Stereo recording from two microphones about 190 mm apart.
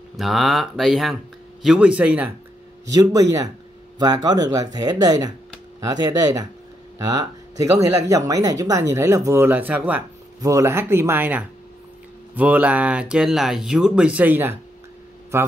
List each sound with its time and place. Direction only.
0.2 s speech: centre (ahead or behind)
2.9 s speech: 20° right (ahead or behind)